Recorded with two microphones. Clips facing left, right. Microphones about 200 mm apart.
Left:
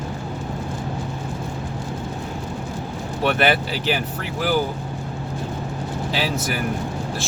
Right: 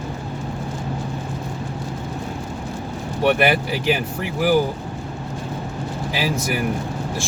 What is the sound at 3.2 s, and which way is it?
Speech, 15° right (ahead or behind).